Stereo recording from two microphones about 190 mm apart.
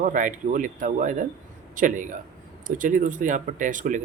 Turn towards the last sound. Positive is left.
turn(degrees=-45)  # may be behind; listen again after turning